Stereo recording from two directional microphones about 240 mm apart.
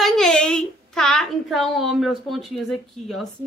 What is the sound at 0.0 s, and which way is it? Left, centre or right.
A child's voice, centre.